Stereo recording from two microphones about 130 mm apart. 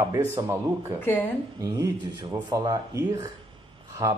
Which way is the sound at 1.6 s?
30° right (ahead or behind).